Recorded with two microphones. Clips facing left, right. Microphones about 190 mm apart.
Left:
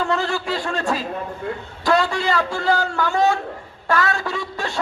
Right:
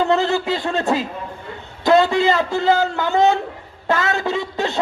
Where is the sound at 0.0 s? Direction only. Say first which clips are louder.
Right 5 dB; 25° right (ahead or behind).